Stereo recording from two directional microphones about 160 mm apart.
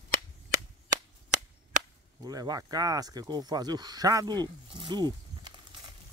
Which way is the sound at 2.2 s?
25° right (ahead or behind).